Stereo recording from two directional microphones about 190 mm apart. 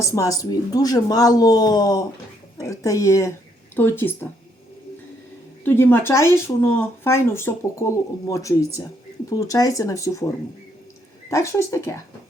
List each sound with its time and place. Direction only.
0.0 s speech: 15° left (ahead or behind)
5.6 s speech: 10° left (ahead or behind)